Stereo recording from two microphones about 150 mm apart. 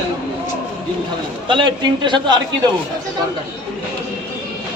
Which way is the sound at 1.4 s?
30° right (ahead or behind).